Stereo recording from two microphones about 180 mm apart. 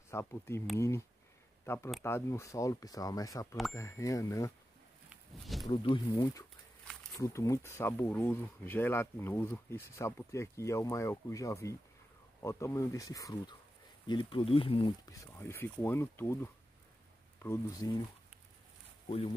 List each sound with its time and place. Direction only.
0.1 s speech: 15° left (ahead or behind)
2.0 s speech: 15° left (ahead or behind)
5.1 s a sound: centre (ahead or behind)
5.7 s speech: 30° left (ahead or behind)
19.0 s speech: 30° left (ahead or behind)